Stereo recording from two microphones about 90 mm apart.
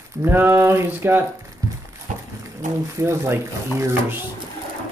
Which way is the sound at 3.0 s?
30° right (ahead or behind).